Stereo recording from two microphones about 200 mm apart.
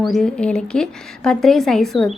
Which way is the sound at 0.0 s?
Centre (ahead or behind).